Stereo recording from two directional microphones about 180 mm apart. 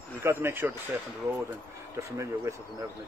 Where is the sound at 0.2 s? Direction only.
15° right (ahead or behind).